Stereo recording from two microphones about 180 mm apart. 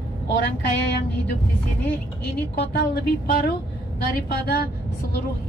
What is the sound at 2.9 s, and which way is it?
A woman's voice, 55° left (ahead or behind).